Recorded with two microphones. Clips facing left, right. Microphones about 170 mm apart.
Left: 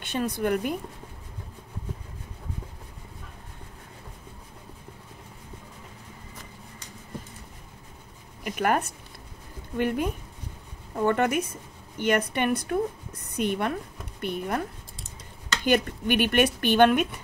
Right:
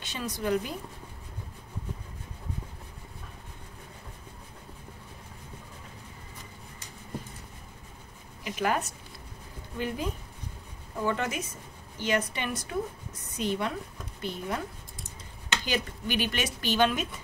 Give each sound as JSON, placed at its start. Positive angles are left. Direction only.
{"t": 0.0, "sound": "speech", "side_deg": 55}
{"t": 8.5, "sound": "speech", "side_deg": 55}
{"t": 15.6, "sound": "speech", "side_deg": 55}